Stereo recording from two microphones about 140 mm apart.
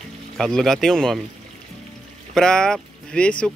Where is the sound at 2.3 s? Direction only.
5° left (ahead or behind).